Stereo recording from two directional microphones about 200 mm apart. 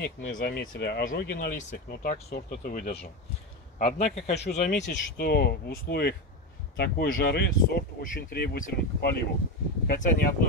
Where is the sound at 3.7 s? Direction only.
35° left (ahead or behind).